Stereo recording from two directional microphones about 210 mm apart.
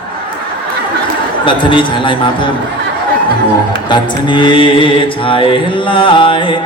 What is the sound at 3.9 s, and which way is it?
Music, 20° left (ahead or behind).